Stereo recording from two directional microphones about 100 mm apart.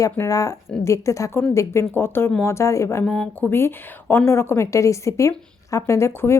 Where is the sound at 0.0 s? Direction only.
35° left (ahead or behind).